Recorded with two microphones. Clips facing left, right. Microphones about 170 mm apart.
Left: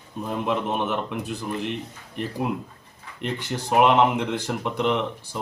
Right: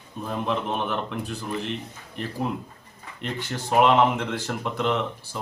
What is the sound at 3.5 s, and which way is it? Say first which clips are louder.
Speech: even; centre (ahead or behind).